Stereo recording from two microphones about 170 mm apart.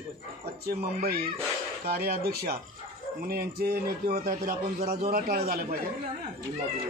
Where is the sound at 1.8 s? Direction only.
65° right (ahead or behind).